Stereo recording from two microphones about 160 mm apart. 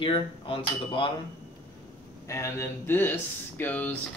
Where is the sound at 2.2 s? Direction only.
15° left (ahead or behind).